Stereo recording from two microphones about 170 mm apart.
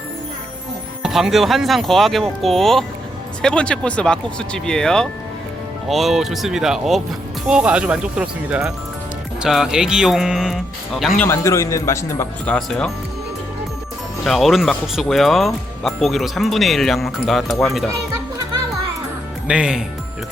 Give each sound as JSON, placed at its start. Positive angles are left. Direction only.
{"t": 1.0, "sound": "speech", "side_deg": 0}
{"t": 11.2, "sound": "speech", "side_deg": 15}
{"t": 12.5, "sound": "speech", "side_deg": 0}
{"t": 14.3, "sound": "speech", "side_deg": 0}
{"t": 19.5, "sound": "speech", "side_deg": -5}